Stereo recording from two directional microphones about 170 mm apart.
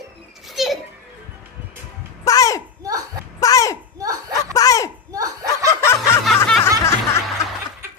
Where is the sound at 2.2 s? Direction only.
20° left (ahead or behind).